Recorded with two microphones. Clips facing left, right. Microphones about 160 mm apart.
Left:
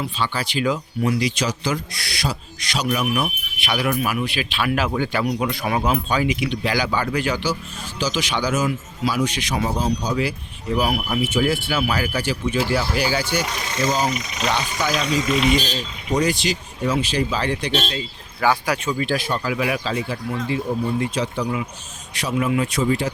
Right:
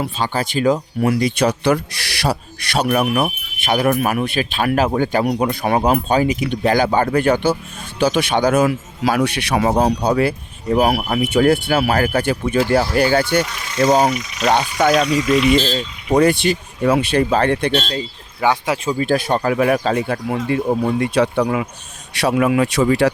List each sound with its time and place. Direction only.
0.2 s speech: 45° right (ahead or behind)
16.1 s speech: 60° right (ahead or behind)
18.3 s speech: 20° right (ahead or behind)
19.0 s speech: 50° right (ahead or behind); by 23.1 s 70° right (ahead or behind)